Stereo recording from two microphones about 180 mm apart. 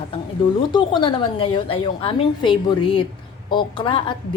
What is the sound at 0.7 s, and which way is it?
A woman's voice, 25° left (ahead or behind).